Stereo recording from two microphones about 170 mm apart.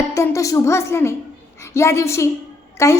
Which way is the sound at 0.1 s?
15° left (ahead or behind).